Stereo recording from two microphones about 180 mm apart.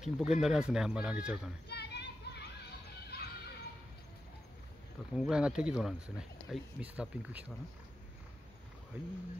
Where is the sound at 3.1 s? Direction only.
60° left (ahead or behind).